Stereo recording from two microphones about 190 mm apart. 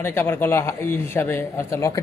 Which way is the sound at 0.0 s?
10° left (ahead or behind).